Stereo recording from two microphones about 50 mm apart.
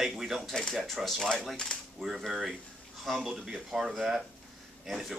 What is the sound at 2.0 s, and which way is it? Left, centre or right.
Speech, centre.